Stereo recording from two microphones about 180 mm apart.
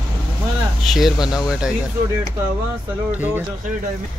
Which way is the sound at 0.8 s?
Centre (ahead or behind).